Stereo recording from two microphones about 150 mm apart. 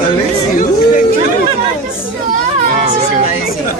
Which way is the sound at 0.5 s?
60° left (ahead or behind).